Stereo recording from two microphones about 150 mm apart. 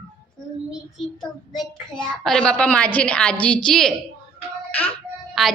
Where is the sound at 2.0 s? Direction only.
5° left (ahead or behind).